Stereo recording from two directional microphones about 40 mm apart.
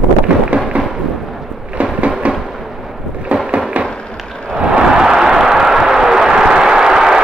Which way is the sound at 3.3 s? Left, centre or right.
Right.